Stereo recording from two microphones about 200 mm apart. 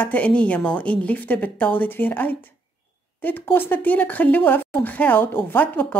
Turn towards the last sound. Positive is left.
turn(degrees=10)  # may be behind; listen again after turning